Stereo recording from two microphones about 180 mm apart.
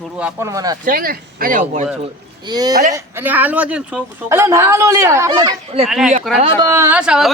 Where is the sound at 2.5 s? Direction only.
20° right (ahead or behind).